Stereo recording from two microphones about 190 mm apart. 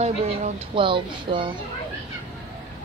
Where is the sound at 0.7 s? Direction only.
25° right (ahead or behind).